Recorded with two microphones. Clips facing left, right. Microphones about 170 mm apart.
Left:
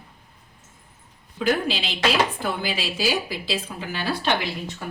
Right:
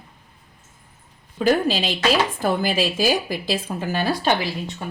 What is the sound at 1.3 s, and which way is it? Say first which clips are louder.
Speech: right 4 dB; 45° right (ahead or behind).